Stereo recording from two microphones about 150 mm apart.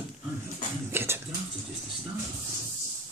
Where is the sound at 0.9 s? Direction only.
15° right (ahead or behind).